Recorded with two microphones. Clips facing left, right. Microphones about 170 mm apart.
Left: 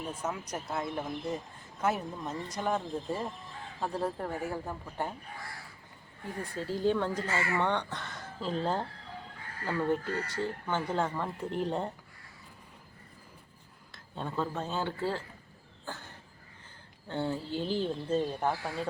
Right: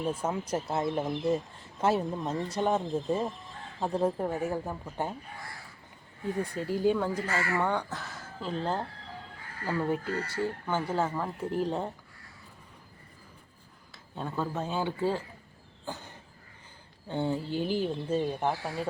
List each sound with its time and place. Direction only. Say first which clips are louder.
0.1 s speech: right 5 dB; 30° right (ahead or behind)
6.4 s speech: right 2 dB; 15° right (ahead or behind)
13.9 s speech: right 1 dB; 5° right (ahead or behind)
15.9 s a sound: right 3 dB; 15° right (ahead or behind)
17.1 s speech: right 3 dB; 15° right (ahead or behind)